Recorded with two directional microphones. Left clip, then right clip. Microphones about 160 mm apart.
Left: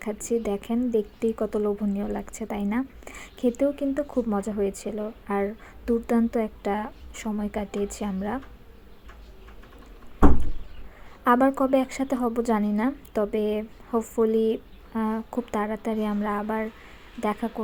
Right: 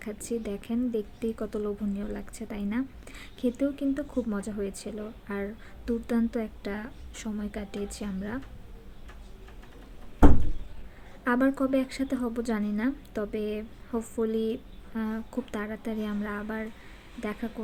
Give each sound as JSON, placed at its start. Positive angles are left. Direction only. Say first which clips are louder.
{"t": 0.0, "sound": "a woman's voice", "louder": "left 7 dB", "side_deg": 20}
{"t": 11.2, "sound": "a woman's voice", "louder": "left 6 dB", "side_deg": 20}